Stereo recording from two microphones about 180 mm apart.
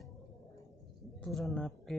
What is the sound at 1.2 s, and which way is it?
Speech, centre (ahead or behind).